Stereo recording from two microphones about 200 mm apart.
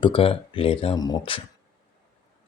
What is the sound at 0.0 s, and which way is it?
Speech, 25° left (ahead or behind).